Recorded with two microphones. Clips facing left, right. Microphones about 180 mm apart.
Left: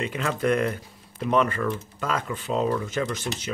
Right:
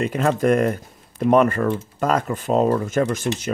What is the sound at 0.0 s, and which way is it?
Speech, 40° right (ahead or behind).